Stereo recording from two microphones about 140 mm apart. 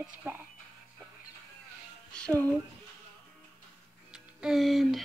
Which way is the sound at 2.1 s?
10° left (ahead or behind).